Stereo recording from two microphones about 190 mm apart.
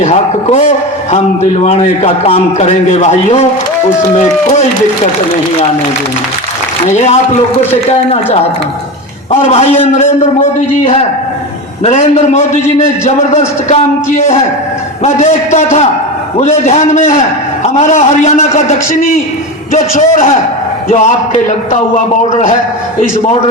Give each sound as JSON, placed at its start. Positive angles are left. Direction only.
{"t": 0.0, "sound": "a man's voice", "side_deg": 35}
{"t": 1.6, "sound": "a man's voice", "side_deg": 35}
{"t": 6.9, "sound": "a man's voice", "side_deg": 35}
{"t": 11.8, "sound": "a man's voice", "side_deg": 35}
{"t": 15.0, "sound": "a man's voice", "side_deg": 40}